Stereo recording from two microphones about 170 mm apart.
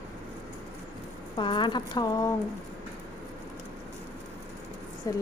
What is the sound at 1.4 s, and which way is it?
Speech, 30° left (ahead or behind).